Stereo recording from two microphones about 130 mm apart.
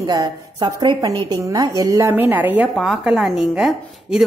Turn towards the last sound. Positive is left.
turn(degrees=-5)  # may be behind; listen again after turning